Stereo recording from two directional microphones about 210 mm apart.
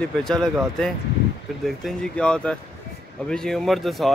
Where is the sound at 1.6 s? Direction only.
Centre (ahead or behind).